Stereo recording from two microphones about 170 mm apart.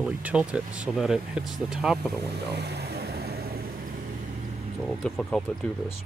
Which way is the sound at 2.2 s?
75° right (ahead or behind).